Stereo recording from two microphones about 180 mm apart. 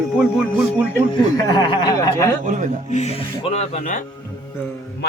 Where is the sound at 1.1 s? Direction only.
20° left (ahead or behind).